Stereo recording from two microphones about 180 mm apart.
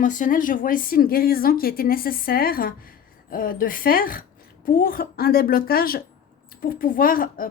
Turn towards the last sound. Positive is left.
turn(degrees=50)  # may be behind; listen again after turning